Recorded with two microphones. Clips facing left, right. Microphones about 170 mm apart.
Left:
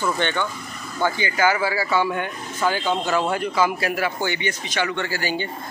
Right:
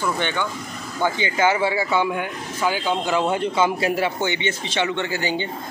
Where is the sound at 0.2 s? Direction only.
10° right (ahead or behind).